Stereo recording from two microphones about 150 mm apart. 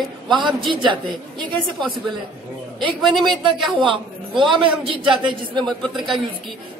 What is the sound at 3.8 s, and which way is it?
A man's voice, 35° right (ahead or behind).